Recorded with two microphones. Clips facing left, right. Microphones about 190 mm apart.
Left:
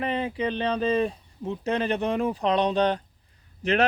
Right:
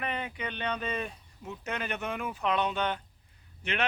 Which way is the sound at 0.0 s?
30° left (ahead or behind).